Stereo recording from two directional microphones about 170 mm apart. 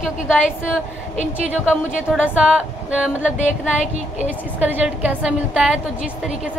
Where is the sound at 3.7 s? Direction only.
45° left (ahead or behind).